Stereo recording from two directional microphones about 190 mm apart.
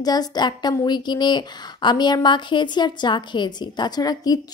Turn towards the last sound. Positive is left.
turn(degrees=20)  # may be behind; listen again after turning